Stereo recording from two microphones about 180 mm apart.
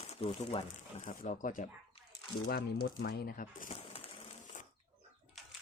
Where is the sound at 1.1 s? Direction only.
45° left (ahead or behind).